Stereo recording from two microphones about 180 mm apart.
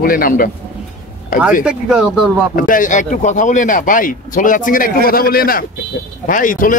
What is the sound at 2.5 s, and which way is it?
A man's voice, 50° left (ahead or behind).